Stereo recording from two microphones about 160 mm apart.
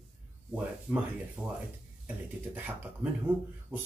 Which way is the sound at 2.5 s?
10° right (ahead or behind).